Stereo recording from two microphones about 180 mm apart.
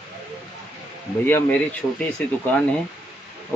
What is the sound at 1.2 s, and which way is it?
Speech, 10° left (ahead or behind).